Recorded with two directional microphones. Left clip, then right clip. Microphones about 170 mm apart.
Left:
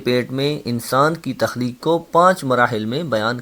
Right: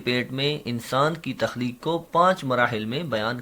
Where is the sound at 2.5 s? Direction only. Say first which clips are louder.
Left 6 dB; 50° left (ahead or behind).